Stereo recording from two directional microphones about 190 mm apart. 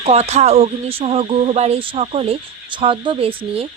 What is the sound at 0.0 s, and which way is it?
A woman's voice, 35° right (ahead or behind).